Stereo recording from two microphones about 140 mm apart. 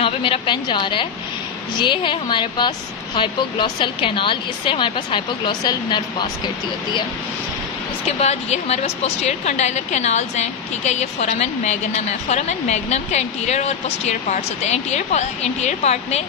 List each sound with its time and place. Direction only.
0.0 s a woman's voice: 40° left (ahead or behind)
8.2 s a woman's voice: 50° left (ahead or behind)